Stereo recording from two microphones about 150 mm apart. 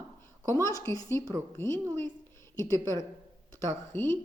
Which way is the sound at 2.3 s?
20° left (ahead or behind).